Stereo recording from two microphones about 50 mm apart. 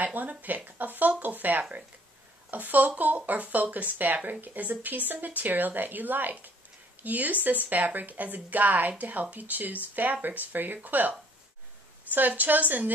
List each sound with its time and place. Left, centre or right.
0.0 s a woman's voice: right